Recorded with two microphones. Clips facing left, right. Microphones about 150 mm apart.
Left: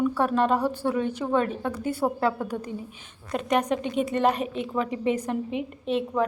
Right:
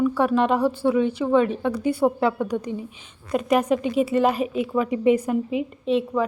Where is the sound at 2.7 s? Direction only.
45° left (ahead or behind).